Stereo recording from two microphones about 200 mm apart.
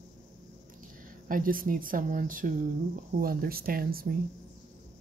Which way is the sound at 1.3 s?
45° right (ahead or behind).